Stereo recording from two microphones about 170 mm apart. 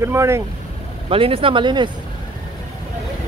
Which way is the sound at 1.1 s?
30° right (ahead or behind).